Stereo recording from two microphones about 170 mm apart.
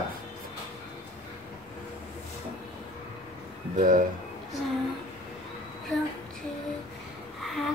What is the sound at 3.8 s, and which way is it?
Speech, 50° right (ahead or behind).